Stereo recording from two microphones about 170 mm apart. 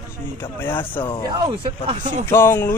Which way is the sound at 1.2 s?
25° right (ahead or behind).